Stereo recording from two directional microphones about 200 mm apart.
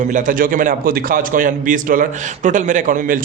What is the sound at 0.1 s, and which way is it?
A man's voice, 40° right (ahead or behind).